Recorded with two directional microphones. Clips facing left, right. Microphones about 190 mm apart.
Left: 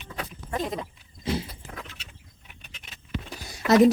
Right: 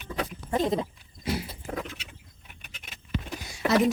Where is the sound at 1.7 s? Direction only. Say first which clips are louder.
Right 10 dB; 45° right (ahead or behind).